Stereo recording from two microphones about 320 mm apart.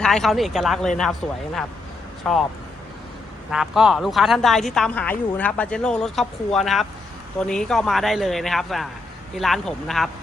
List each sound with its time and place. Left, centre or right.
0.0 s a woman's voice: centre
2.2 s a woman's voice: centre
3.5 s a woman's voice: centre